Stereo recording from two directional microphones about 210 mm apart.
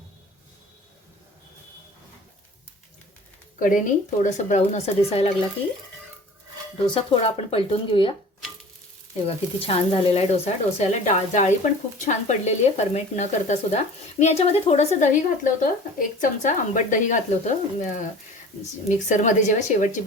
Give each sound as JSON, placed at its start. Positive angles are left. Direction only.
{"t": 3.6, "sound": "speech", "side_deg": 35}
{"t": 6.8, "sound": "speech", "side_deg": 25}
{"t": 9.2, "sound": "speech", "side_deg": 25}